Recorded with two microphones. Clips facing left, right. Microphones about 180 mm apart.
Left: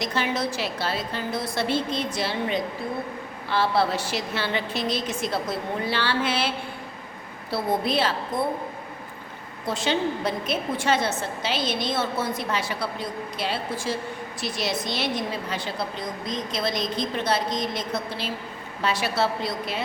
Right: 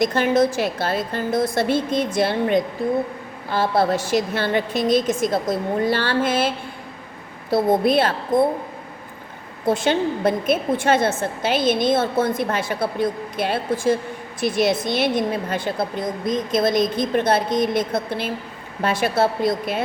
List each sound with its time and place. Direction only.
0.0 s a woman's voice: 50° right (ahead or behind)
7.5 s a woman's voice: 50° right (ahead or behind)
9.6 s a woman's voice: 50° right (ahead or behind)